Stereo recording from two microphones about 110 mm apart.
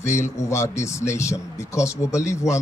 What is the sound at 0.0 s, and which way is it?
Speech, 25° left (ahead or behind).